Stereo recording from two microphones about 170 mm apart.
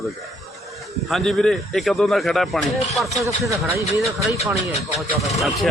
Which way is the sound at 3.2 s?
20° right (ahead or behind).